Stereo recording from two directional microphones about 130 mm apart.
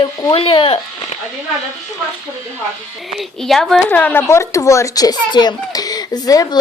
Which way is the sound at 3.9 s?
15° left (ahead or behind).